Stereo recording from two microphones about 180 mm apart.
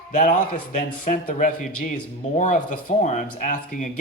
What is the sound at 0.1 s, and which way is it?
Speech, 45° left (ahead or behind).